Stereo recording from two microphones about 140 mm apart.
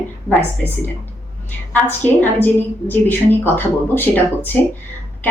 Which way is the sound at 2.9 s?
15° left (ahead or behind).